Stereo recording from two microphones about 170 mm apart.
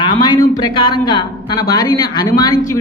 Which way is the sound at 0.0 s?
25° left (ahead or behind).